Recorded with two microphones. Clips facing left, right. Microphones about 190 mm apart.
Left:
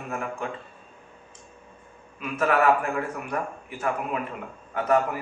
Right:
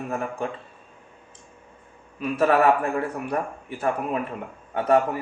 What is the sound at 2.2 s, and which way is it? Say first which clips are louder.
A man's voice: right 3 dB; 35° right (ahead or behind).